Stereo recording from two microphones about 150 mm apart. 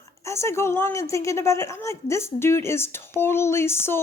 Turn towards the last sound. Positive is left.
turn(degrees=15)  # may be behind; listen again after turning